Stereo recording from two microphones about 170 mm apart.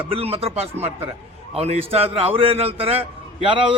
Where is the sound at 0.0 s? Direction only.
35° right (ahead or behind).